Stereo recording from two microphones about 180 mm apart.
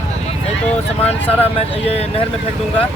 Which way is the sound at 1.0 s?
35° left (ahead or behind).